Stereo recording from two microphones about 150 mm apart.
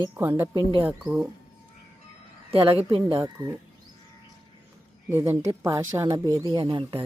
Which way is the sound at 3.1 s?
25° right (ahead or behind).